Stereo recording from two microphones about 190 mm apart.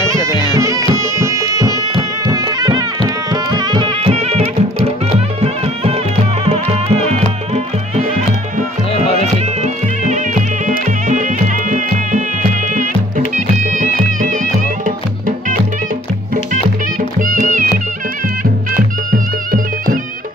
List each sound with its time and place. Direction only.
0.2 s music: 20° left (ahead or behind)
0.9 s music: 15° right (ahead or behind); by 4.4 s 30° right (ahead or behind)
6.4 s music: 30° right (ahead or behind)
9.6 s music: 40° right (ahead or behind)
13.7 s music: 40° right (ahead or behind)
17.2 s music: 45° right (ahead or behind)
19.1 s music: 45° right (ahead or behind)